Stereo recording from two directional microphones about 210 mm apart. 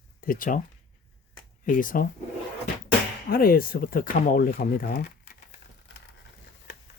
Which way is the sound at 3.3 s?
45° left (ahead or behind).